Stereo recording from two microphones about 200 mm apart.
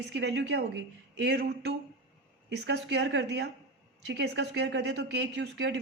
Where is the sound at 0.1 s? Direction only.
60° right (ahead or behind).